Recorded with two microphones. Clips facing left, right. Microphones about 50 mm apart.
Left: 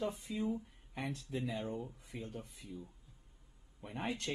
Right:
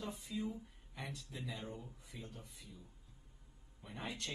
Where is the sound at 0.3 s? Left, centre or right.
Left.